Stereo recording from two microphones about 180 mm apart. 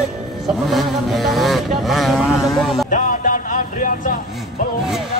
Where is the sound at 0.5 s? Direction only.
Centre (ahead or behind).